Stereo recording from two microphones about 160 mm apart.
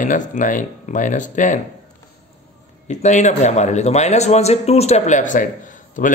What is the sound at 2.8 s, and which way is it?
A man's voice, 45° left (ahead or behind).